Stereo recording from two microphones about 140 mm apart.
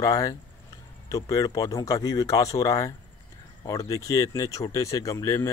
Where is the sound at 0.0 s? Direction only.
25° left (ahead or behind).